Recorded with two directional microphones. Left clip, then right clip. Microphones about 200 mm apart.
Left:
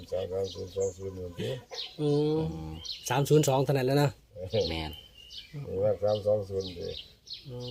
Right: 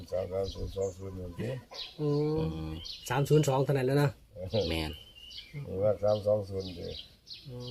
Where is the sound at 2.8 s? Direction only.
30° left (ahead or behind).